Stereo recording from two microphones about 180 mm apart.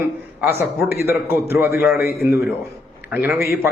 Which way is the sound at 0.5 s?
10° right (ahead or behind).